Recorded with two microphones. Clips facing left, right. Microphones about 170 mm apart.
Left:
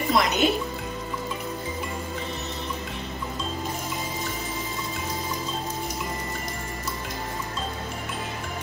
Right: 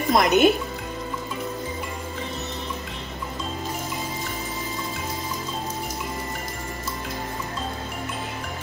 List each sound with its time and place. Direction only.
0.1 s speech: 55° right (ahead or behind)